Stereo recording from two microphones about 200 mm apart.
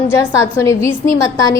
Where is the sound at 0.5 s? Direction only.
15° left (ahead or behind).